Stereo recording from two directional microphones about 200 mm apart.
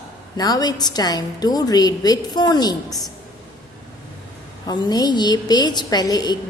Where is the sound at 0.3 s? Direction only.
20° left (ahead or behind).